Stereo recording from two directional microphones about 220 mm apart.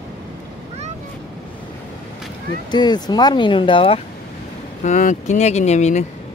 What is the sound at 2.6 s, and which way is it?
Speech, 20° left (ahead or behind).